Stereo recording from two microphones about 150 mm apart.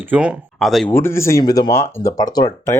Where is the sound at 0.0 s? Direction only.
10° right (ahead or behind).